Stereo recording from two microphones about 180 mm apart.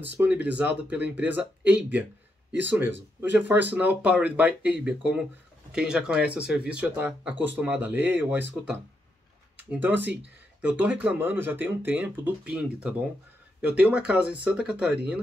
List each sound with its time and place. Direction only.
0.2 s speech: 10° right (ahead or behind)